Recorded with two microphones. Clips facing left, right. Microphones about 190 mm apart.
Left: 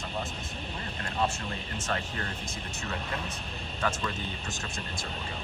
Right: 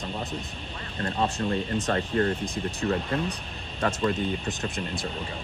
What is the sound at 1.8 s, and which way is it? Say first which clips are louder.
Speech: right 7 dB; 35° right (ahead or behind).